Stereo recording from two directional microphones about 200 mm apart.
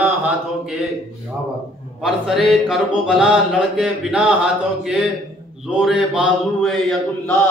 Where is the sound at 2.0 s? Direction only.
Centre (ahead or behind).